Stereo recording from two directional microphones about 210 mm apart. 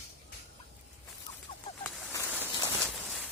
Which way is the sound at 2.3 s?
10° right (ahead or behind).